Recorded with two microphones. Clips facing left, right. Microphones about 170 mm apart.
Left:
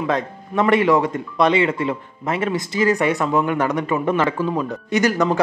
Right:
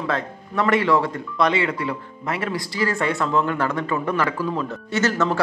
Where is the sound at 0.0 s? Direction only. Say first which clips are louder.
Left 4 dB; 20° left (ahead or behind).